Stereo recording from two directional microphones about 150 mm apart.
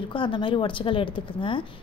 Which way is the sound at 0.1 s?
35° left (ahead or behind).